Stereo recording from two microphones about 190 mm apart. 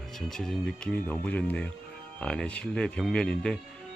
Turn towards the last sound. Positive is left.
turn(degrees=5)  # may be behind; listen again after turning